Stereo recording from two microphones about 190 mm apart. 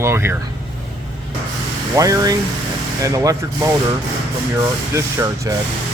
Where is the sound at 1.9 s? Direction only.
20° right (ahead or behind).